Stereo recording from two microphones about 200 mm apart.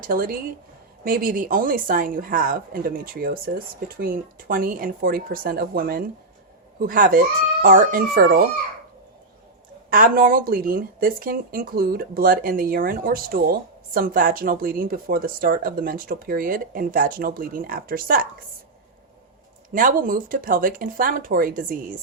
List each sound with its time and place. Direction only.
0.0 s speech: 45° right (ahead or behind)
9.9 s speech: 45° right (ahead or behind)
19.7 s speech: 45° right (ahead or behind)